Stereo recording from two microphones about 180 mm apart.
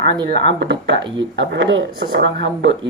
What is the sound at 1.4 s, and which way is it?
Speech, 90° right.